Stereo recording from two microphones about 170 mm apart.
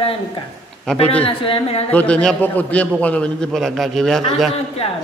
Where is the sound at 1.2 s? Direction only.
30° left (ahead or behind).